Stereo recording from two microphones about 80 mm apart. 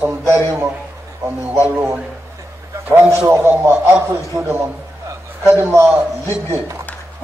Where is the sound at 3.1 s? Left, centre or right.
Right.